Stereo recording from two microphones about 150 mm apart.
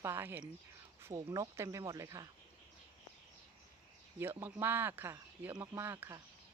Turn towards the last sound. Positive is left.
turn(degrees=-15)  # may be behind; listen again after turning